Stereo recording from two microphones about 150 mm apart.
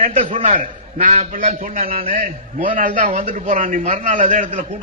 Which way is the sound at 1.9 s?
70° right (ahead or behind).